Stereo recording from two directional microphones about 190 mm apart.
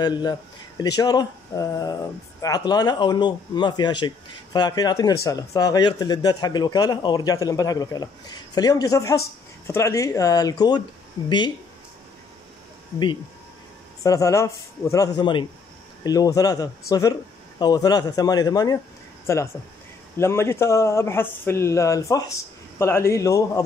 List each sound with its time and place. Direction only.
0.0 s speech: 20° left (ahead or behind)
14.0 s speech: 15° left (ahead or behind)